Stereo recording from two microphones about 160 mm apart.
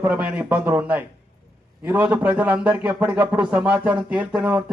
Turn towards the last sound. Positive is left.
turn(degrees=-10)  # may be behind; listen again after turning